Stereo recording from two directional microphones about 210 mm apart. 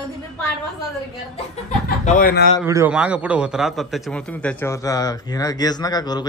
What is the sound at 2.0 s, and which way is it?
Speech, 40° left (ahead or behind).